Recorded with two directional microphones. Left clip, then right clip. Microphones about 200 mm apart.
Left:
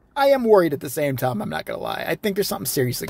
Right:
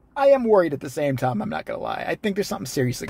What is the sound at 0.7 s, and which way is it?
Speech, 10° left (ahead or behind).